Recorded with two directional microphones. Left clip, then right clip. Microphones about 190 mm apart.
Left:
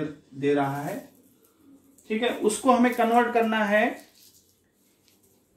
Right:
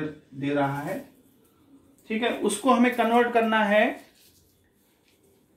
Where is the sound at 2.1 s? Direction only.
25° right (ahead or behind).